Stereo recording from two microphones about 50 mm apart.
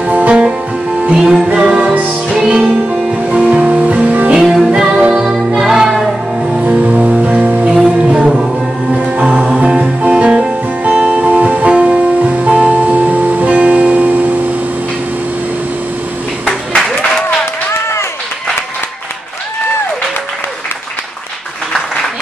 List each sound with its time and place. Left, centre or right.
0.0 s music: right
0.3 s music: centre
4.3 s music: centre
6.6 s music: right
7.6 s music: right
9.4 s music: centre; by 14.4 s right
16.7 s music: centre
17.6 s a sound: left